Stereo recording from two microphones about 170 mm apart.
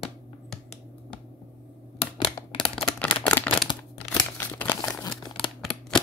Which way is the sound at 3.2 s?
10° left (ahead or behind).